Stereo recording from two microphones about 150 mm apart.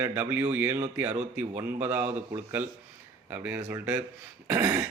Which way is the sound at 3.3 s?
10° right (ahead or behind).